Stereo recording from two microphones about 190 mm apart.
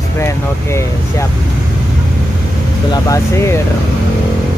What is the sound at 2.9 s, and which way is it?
Speech, 15° left (ahead or behind).